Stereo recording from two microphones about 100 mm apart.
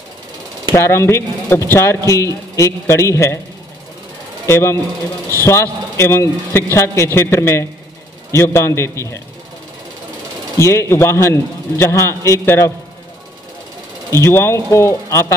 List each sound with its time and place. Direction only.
0.7 s a man's voice: 25° left (ahead or behind)
4.5 s a man's voice: 25° left (ahead or behind)
10.6 s a man's voice: 25° left (ahead or behind)
14.2 s a man's voice: 25° left (ahead or behind)